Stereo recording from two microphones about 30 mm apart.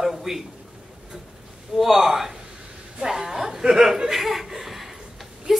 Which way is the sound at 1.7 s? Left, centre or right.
Centre.